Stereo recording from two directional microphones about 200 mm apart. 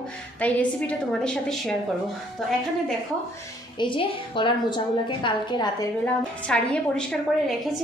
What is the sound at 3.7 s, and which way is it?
A woman's voice, 25° left (ahead or behind).